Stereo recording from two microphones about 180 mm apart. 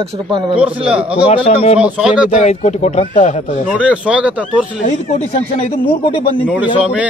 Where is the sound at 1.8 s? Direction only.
5° right (ahead or behind).